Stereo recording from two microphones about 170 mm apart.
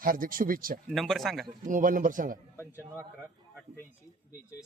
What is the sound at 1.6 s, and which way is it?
Speech, 50° right (ahead or behind).